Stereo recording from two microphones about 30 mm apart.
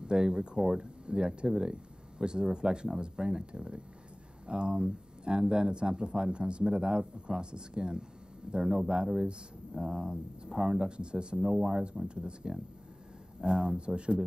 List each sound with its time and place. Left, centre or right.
0.0 s speech: right
10.9 s speech: right
11.4 s speech: centre
12.1 s speech: right
13.5 s speech: right
13.7 s speech: right